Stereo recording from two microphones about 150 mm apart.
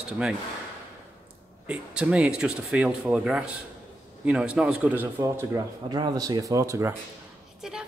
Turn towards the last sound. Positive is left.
turn(degrees=-5)  # may be behind; listen again after turning